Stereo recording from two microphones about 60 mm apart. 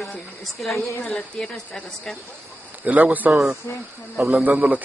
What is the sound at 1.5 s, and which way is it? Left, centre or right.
Speech, centre.